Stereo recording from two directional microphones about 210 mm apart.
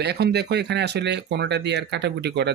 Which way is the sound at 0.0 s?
50° right (ahead or behind).